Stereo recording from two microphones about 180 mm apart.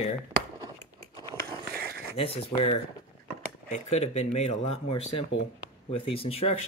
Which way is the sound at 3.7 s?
40° left (ahead or behind).